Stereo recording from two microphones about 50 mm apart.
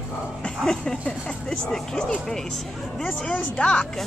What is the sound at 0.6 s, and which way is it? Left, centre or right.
Speech, centre.